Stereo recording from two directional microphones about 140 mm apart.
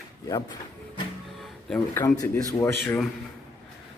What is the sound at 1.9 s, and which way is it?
Speech, 20° left (ahead or behind).